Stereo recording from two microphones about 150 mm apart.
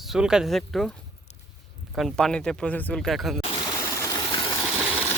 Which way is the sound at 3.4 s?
30° left (ahead or behind).